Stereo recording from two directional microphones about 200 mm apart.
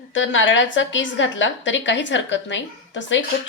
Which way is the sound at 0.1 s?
75° left (ahead or behind).